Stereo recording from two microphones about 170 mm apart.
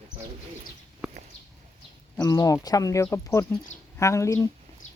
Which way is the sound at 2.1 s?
20° left (ahead or behind).